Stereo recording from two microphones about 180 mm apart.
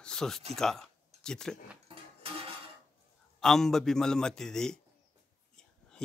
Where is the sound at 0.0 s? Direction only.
5° left (ahead or behind).